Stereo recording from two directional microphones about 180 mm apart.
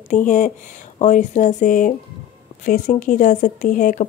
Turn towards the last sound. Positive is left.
turn(degrees=45)  # may be behind; listen again after turning